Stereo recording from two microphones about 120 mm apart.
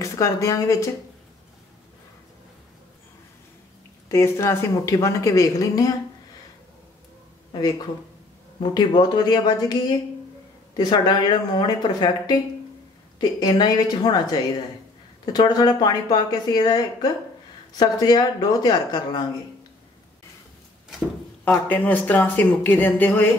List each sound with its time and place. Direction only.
0.0 s speech: 25° left (ahead or behind)
4.1 s speech: 20° left (ahead or behind)
8.5 s speech: 35° left (ahead or behind)
21.5 s speech: 15° left (ahead or behind)